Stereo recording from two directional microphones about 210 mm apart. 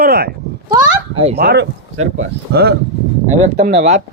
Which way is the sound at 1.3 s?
50° right (ahead or behind).